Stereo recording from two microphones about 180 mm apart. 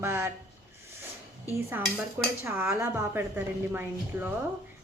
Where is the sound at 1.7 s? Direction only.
10° right (ahead or behind).